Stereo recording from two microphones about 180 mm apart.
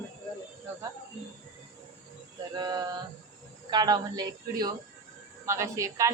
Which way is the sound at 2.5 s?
20° right (ahead or behind).